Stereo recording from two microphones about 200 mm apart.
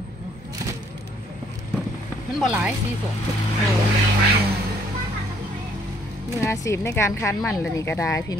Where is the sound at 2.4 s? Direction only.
5° right (ahead or behind).